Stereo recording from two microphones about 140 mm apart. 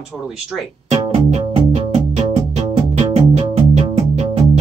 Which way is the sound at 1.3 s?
55° right (ahead or behind).